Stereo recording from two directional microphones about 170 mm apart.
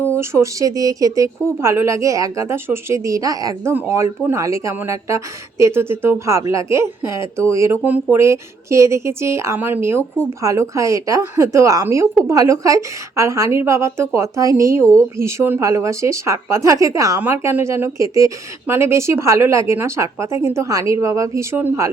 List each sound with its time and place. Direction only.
0.1 s speech: 15° right (ahead or behind)